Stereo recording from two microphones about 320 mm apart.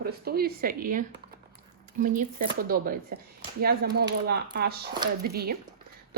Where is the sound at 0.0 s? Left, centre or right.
Right.